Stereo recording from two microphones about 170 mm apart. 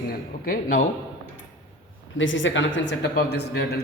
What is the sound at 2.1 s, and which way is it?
Speech, 90° left.